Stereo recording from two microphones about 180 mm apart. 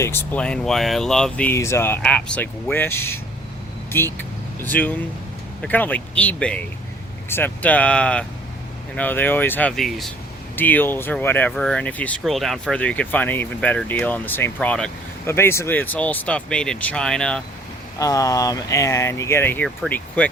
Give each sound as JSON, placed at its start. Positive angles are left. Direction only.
{"t": 0.0, "sound": "speech", "side_deg": 10}
{"t": 18.0, "sound": "speech", "side_deg": 20}